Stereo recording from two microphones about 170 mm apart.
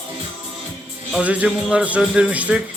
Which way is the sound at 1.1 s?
5° right (ahead or behind).